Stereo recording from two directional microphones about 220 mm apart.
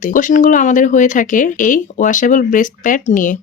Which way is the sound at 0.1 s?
35° left (ahead or behind).